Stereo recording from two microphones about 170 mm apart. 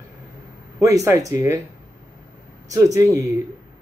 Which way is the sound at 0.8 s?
15° right (ahead or behind).